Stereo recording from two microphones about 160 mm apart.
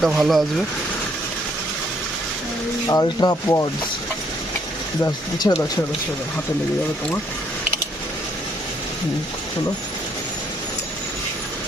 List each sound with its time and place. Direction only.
0.0 s speech: centre (ahead or behind)
2.9 s speech: 25° left (ahead or behind)
5.5 s speech: 20° left (ahead or behind)